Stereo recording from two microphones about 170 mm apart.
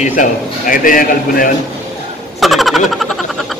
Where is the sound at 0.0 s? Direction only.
50° left (ahead or behind).